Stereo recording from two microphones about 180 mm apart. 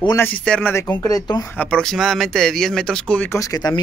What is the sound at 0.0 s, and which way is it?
Speech, 15° left (ahead or behind).